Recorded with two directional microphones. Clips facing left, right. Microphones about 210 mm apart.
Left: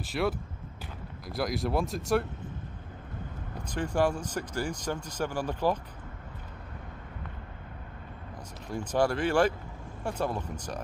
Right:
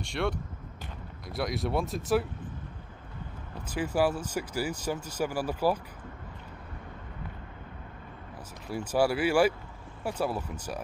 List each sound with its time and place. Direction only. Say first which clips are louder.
0.0 s speech: left 1 dB; 5° left (ahead or behind)
3.6 s speech: even; 5° right (ahead or behind)
8.6 s speech: right 1 dB; 5° right (ahead or behind)